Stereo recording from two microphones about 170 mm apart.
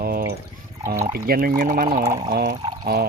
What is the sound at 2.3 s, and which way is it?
Speech, 75° right (ahead or behind).